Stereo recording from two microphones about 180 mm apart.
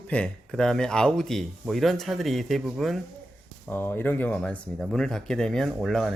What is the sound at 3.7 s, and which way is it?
Speech, 10° left (ahead or behind).